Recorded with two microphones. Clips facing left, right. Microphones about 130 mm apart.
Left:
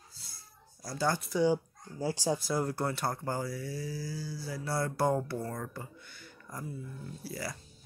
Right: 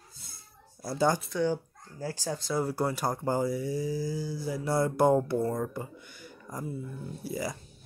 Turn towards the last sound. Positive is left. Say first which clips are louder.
# right 5 dB
turn(degrees=-15)  # may be behind; listen again after turning